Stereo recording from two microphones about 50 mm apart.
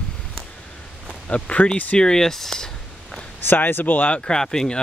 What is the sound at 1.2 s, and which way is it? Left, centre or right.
Speech, left.